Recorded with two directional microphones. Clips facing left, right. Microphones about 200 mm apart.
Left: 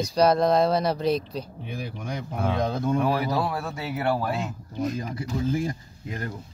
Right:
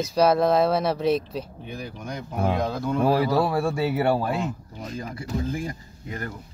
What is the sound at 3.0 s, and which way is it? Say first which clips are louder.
Speech: right 4 dB; 30° right (ahead or behind).